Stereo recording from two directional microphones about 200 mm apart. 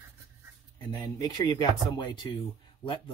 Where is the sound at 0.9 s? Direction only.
20° left (ahead or behind).